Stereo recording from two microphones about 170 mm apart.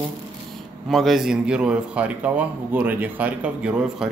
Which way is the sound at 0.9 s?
Centre (ahead or behind).